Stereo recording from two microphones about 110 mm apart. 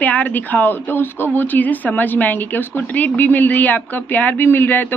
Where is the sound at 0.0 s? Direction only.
15° left (ahead or behind).